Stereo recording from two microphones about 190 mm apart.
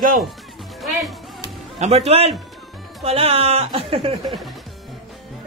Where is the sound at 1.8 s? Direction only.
35° right (ahead or behind).